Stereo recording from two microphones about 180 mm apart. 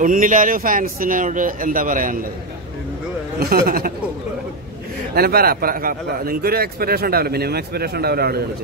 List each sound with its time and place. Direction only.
0.0 s speech: 45° right (ahead or behind)
3.3 s a man's voice: 60° right (ahead or behind)
5.1 s a man's voice: 60° right (ahead or behind)